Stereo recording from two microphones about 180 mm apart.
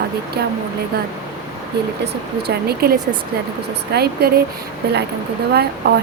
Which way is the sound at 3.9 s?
60° right (ahead or behind).